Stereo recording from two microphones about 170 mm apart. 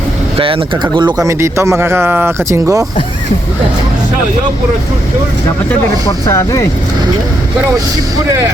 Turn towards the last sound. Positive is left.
turn(degrees=15)  # may be behind; listen again after turning